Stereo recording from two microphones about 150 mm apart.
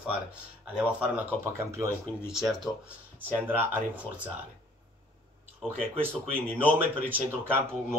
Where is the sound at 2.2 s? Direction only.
Centre (ahead or behind).